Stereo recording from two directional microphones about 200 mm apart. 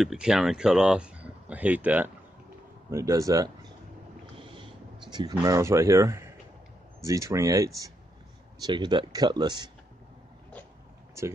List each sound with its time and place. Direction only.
0.0 s speech: centre (ahead or behind); by 3.7 s 20° right (ahead or behind)
5.1 s speech: 20° right (ahead or behind)
11.2 s speech: 15° right (ahead or behind)